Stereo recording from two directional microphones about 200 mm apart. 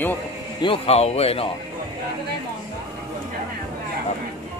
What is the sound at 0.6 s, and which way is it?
Speech, 30° left (ahead or behind).